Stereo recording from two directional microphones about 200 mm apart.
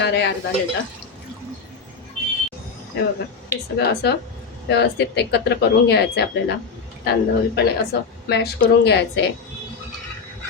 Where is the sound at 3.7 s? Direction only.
55° left (ahead or behind).